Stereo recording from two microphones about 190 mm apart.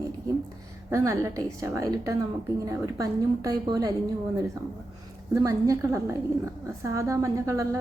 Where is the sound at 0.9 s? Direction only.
15° right (ahead or behind).